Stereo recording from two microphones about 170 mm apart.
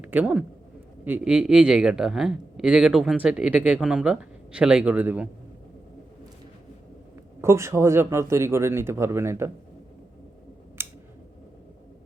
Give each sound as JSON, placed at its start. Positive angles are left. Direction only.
{"t": 0.0, "sound": "speech", "side_deg": -10}
{"t": 7.4, "sound": "speech", "side_deg": -15}
{"t": 10.8, "sound": "scissors", "side_deg": -15}